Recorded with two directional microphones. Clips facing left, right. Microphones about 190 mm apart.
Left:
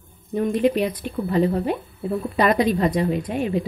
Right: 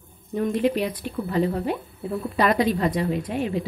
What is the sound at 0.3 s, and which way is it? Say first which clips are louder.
Speech: left 3 dB; 15° left (ahead or behind).